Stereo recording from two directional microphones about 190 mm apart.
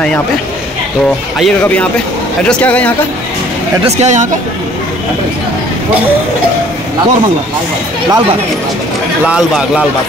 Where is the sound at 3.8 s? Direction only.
35° right (ahead or behind).